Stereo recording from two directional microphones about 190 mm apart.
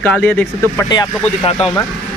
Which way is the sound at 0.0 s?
5° left (ahead or behind).